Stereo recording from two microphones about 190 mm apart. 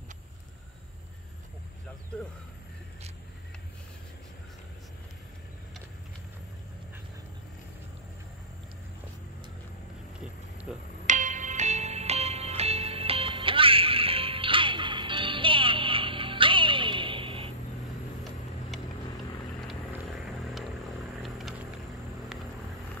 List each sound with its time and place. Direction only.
10.7 s speech: 5° right (ahead or behind)
11.1 s music: 40° right (ahead or behind)
18.7 s vehicle: centre (ahead or behind)